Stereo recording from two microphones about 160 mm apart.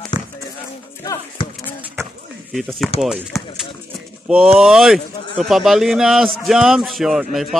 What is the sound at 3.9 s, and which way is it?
Speech, 5° right (ahead or behind).